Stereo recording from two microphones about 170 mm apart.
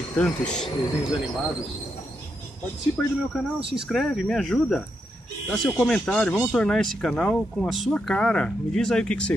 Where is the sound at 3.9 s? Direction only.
Centre (ahead or behind).